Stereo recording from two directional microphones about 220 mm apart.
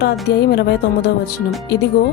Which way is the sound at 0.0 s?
45° left (ahead or behind).